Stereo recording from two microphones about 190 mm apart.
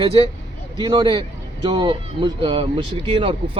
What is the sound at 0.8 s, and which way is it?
Speech, 25° right (ahead or behind).